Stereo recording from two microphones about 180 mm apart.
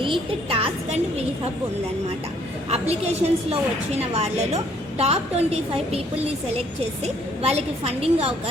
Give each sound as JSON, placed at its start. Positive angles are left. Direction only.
{"t": 0.0, "sound": "a woman's voice", "side_deg": -30}
{"t": 2.6, "sound": "a woman's voice", "side_deg": -35}
{"t": 7.0, "sound": "a woman's voice", "side_deg": -35}